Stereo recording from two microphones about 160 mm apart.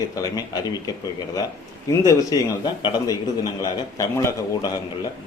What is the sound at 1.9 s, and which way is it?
A man's voice, 20° left (ahead or behind).